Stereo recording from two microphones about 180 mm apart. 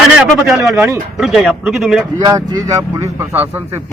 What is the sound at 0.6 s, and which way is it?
A woman's voice, centre (ahead or behind).